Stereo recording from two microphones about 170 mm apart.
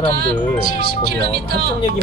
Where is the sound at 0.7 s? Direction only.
70° right (ahead or behind).